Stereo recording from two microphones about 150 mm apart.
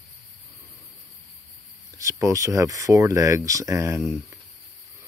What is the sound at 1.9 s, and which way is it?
Speech, 20° right (ahead or behind).